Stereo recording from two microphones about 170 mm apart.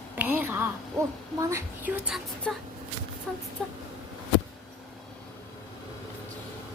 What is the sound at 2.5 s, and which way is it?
Speech, 5° left (ahead or behind).